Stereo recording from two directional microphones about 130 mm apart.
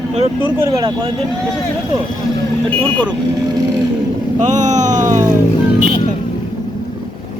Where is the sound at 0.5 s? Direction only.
30° right (ahead or behind).